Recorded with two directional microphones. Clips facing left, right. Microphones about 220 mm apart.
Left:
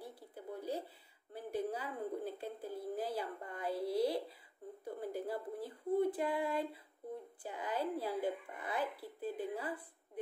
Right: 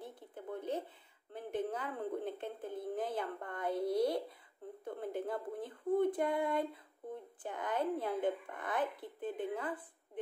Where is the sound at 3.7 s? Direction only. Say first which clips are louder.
Right 3 dB; 25° right (ahead or behind).